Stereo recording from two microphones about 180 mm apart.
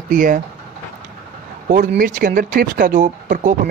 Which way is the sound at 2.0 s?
45° right (ahead or behind).